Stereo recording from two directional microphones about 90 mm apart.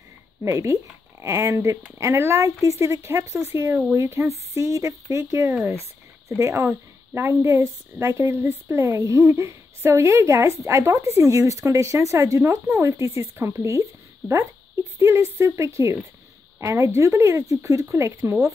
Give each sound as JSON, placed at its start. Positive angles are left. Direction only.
{"t": 0.4, "sound": "a woman's voice", "side_deg": -35}